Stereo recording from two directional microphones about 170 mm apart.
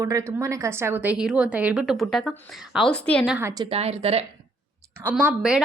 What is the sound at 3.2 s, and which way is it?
Speech, 5° right (ahead or behind).